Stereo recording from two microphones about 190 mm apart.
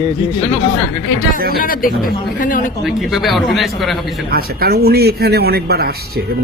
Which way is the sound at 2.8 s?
Centre (ahead or behind).